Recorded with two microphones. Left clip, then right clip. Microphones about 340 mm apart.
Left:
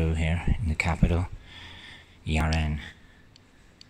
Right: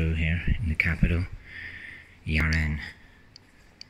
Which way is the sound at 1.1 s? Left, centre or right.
Centre.